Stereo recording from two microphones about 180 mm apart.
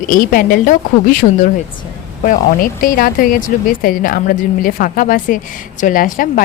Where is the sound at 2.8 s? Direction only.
55° left (ahead or behind).